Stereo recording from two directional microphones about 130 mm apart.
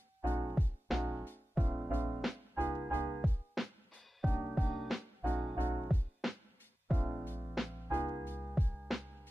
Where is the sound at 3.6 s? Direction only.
Centre (ahead or behind).